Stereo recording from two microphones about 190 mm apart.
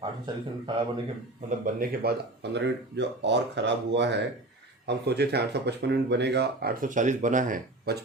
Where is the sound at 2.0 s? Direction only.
55° right (ahead or behind).